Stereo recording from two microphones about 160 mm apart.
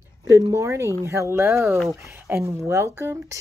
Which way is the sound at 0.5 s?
20° right (ahead or behind).